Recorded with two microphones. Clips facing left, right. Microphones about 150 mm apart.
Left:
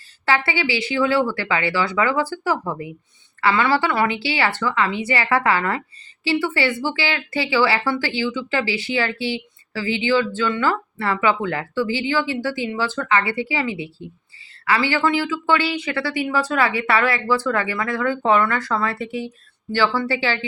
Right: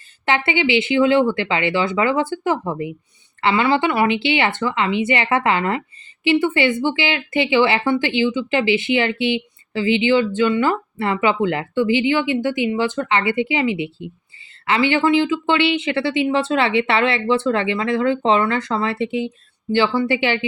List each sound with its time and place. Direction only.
0.3 s speech: 20° right (ahead or behind)